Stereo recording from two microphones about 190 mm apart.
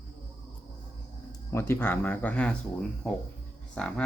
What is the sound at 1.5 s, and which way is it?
Speech, 15° left (ahead or behind).